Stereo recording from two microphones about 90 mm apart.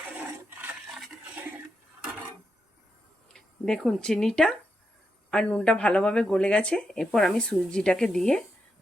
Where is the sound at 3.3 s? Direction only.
5° left (ahead or behind).